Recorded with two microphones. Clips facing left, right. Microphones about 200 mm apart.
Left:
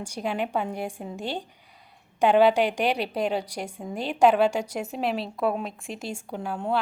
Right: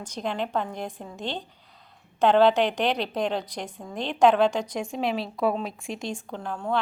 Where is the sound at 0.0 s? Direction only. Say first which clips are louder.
Left 1 dB; 10° left (ahead or behind).